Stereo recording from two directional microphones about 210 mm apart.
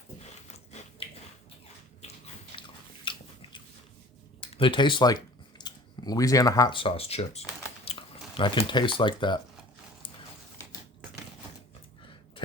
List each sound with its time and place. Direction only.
0.4 s biting: 30° left (ahead or behind)
4.4 s speech: 25° left (ahead or behind)